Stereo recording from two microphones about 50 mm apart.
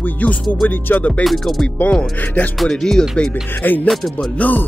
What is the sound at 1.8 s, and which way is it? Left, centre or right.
Music, left.